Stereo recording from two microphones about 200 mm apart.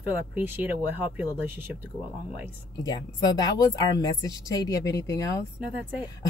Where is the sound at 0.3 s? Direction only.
10° right (ahead or behind).